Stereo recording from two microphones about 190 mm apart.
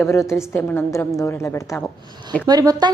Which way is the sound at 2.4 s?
20° right (ahead or behind).